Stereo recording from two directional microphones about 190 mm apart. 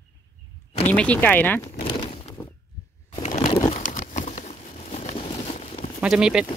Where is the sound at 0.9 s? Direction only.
5° left (ahead or behind).